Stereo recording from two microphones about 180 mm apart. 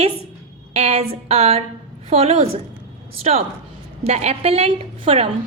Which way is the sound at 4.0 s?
35° right (ahead or behind).